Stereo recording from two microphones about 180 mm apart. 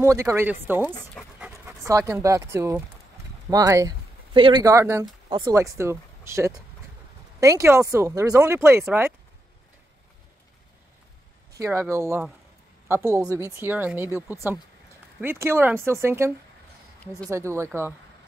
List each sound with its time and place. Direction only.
0.0 s speech: 15° right (ahead or behind)
1.2 s dog: 5° left (ahead or behind)
1.5 s speech: 15° right (ahead or behind)
11.5 s speech: 15° right (ahead or behind)